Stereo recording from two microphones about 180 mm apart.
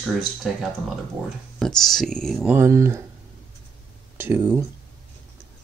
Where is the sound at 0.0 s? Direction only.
5° right (ahead or behind).